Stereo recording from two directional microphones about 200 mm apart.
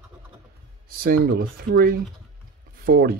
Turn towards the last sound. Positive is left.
turn(degrees=-50)  # may be behind; listen again after turning